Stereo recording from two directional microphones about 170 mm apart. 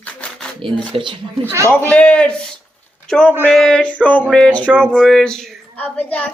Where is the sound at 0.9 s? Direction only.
30° right (ahead or behind).